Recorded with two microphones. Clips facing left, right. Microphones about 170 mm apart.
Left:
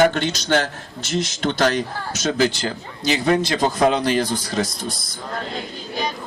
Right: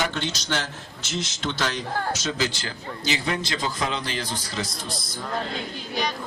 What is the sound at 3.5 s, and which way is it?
Speech, 60° left (ahead or behind).